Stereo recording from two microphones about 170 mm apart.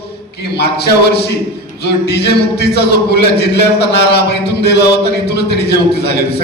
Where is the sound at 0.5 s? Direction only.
75° left (ahead or behind).